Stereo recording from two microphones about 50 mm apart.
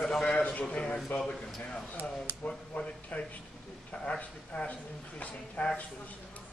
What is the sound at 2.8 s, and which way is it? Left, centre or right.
A man's voice, left.